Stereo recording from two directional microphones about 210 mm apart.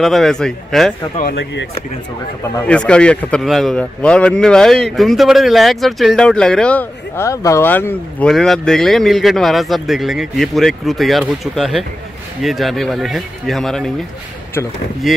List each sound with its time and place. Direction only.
0.0 s speech: centre (ahead or behind)
1.1 s speech: 50° left (ahead or behind)
2.5 s speech: 5° left (ahead or behind)
15.0 s speech: centre (ahead or behind)